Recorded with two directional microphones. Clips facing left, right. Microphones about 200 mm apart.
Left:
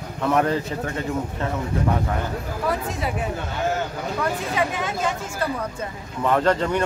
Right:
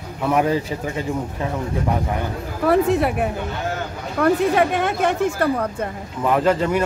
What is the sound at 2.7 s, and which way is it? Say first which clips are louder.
Speech: right 10 dB; 60° right (ahead or behind).